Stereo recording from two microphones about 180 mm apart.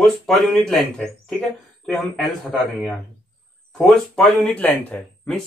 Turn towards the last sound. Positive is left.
turn(degrees=5)  # may be behind; listen again after turning